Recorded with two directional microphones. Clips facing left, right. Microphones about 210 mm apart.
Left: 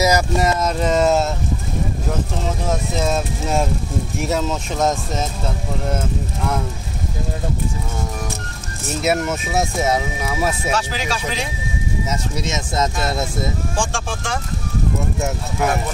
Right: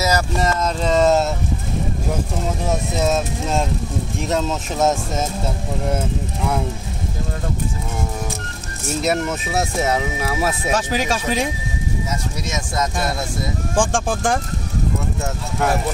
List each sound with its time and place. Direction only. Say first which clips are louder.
0.0 s speech: left 3 dB; 10° left (ahead or behind)
2.7 s speech: right 1 dB; centre (ahead or behind)
9.0 s speech: left 2 dB; 5° left (ahead or behind)
10.9 s speech: right 4 dB; 50° right (ahead or behind)
12.1 s speech: left 2 dB; 20° left (ahead or behind)
13.7 s speech: right 5 dB; 50° right (ahead or behind)